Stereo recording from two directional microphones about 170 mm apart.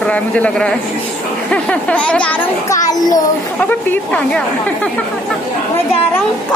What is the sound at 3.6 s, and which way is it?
A woman's voice, 10° left (ahead or behind).